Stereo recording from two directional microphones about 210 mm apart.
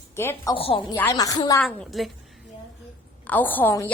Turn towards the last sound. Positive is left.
turn(degrees=10)  # may be behind; listen again after turning